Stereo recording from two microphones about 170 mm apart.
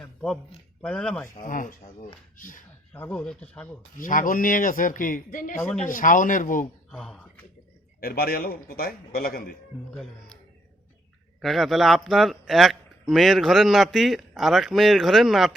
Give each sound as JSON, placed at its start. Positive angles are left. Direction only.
{"t": 0.0, "sound": "a man's voice", "side_deg": 5}
{"t": 1.4, "sound": "speech", "side_deg": 50}
{"t": 2.9, "sound": "speech", "side_deg": 10}
{"t": 3.9, "sound": "speech", "side_deg": 50}
{"t": 5.5, "sound": "a man's voice", "side_deg": 5}
{"t": 5.8, "sound": "speech", "side_deg": 50}
{"t": 6.9, "sound": "a man's voice", "side_deg": 5}
{"t": 8.0, "sound": "a man's voice", "side_deg": 60}
{"t": 11.3, "sound": "a man's voice", "side_deg": 0}